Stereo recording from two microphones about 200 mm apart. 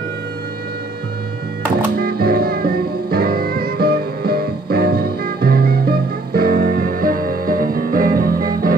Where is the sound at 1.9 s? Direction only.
50° right (ahead or behind).